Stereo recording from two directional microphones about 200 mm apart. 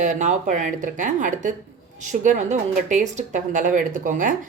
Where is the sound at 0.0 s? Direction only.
40° right (ahead or behind).